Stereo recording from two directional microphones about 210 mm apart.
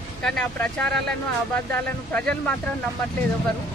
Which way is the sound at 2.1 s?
5° left (ahead or behind).